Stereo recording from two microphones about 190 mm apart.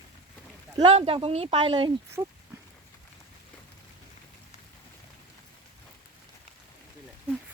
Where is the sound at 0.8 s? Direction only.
30° right (ahead or behind).